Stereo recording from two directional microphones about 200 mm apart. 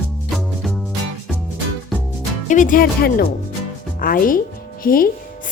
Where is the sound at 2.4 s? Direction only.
40° left (ahead or behind).